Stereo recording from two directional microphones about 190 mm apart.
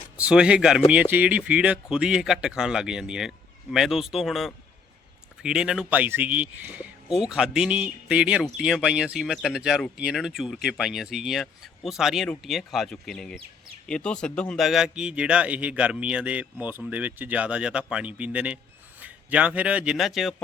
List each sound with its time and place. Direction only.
0.2 s speech: 5° right (ahead or behind)